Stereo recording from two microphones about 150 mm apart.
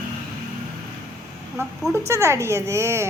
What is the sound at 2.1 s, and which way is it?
Speech, 20° right (ahead or behind).